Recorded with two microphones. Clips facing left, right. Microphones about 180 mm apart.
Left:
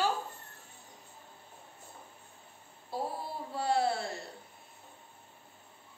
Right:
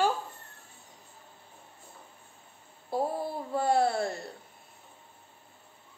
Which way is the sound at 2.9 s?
50° right (ahead or behind).